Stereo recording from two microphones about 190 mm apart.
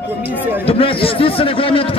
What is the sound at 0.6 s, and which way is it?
Speech, 30° left (ahead or behind).